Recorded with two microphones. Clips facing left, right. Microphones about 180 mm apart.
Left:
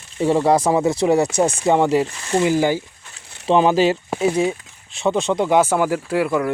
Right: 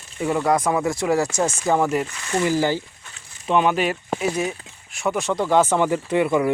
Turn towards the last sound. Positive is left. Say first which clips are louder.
# even
turn(degrees=0)  # may be behind; listen again after turning